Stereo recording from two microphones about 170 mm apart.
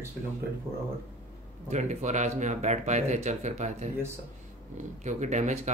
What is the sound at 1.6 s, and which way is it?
Speech, 40° right (ahead or behind).